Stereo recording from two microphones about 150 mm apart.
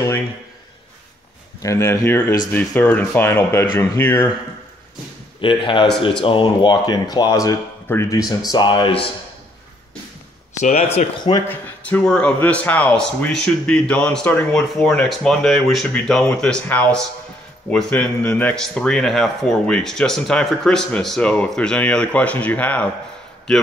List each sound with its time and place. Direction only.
1.6 s a man's voice: 20° left (ahead or behind)
5.4 s speech: 35° left (ahead or behind)
10.6 s speech: 45° left (ahead or behind)
11.1 s speech: 30° left (ahead or behind)
11.4 s a man's voice: 10° left (ahead or behind)